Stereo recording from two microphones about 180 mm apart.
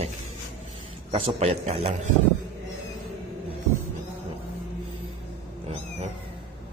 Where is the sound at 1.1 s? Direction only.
35° right (ahead or behind).